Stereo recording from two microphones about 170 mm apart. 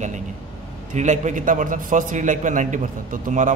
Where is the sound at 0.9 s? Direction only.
45° right (ahead or behind).